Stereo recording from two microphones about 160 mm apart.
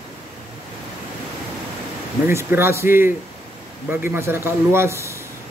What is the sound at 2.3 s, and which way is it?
Speech, 15° right (ahead or behind).